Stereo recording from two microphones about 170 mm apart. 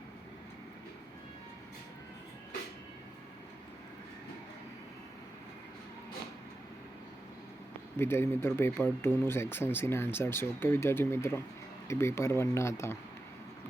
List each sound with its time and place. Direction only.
7.9 s speech: 15° left (ahead or behind)